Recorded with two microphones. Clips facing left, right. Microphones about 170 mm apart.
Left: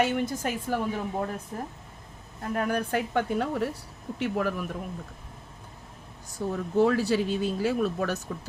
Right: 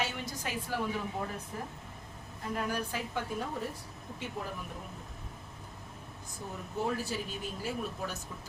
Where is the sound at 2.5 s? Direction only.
55° left (ahead or behind); by 4.7 s 80° left.